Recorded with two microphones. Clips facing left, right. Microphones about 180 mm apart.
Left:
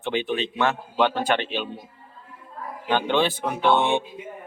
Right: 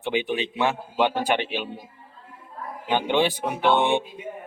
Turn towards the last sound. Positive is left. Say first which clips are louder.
# even
turn(degrees=-15)  # may be behind; listen again after turning